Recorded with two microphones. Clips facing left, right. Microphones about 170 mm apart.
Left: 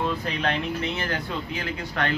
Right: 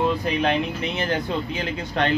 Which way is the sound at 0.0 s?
15° right (ahead or behind).